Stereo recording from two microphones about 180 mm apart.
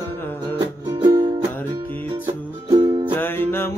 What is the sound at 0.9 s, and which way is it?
Music, 25° right (ahead or behind).